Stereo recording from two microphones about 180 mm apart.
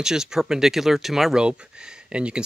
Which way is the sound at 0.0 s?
5° right (ahead or behind).